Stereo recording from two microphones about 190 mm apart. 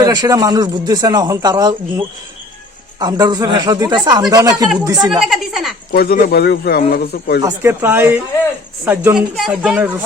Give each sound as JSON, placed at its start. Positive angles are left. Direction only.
{"t": 0.0, "sound": "speech", "side_deg": -20}
{"t": 5.2, "sound": "a woman's voice", "side_deg": 0}
{"t": 5.9, "sound": "speech", "side_deg": 55}
{"t": 7.4, "sound": "speech", "side_deg": -10}